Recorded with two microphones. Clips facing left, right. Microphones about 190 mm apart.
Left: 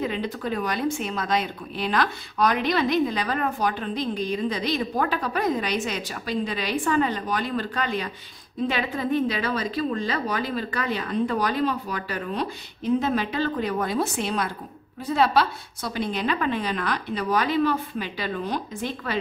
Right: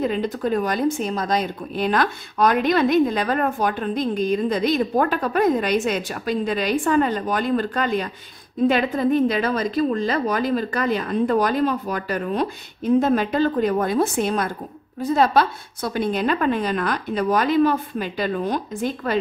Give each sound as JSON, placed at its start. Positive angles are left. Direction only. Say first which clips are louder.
{"t": 0.0, "sound": "a woman's voice", "louder": "right 5 dB", "side_deg": -45}